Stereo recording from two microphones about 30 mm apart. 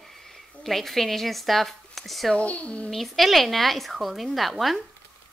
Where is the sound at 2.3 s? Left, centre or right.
Left.